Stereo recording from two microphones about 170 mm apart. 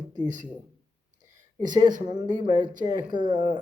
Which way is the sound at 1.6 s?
25° right (ahead or behind).